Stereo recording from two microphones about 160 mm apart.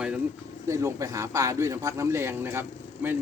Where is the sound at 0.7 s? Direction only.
20° right (ahead or behind).